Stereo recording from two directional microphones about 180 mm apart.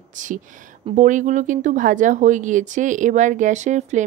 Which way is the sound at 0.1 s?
45° right (ahead or behind).